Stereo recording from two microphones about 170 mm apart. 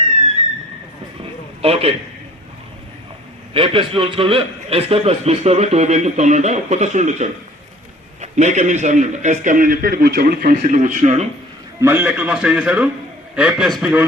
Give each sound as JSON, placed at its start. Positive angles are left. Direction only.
{"t": 1.2, "sound": "a sound", "side_deg": -35}
{"t": 3.5, "sound": "a man's voice", "side_deg": -30}
{"t": 11.8, "sound": "a man's voice", "side_deg": -15}